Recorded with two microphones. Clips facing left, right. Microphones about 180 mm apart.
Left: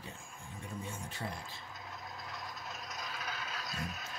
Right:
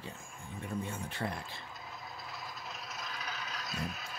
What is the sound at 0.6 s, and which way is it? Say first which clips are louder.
Speech: right 5 dB; 60° right (ahead or behind).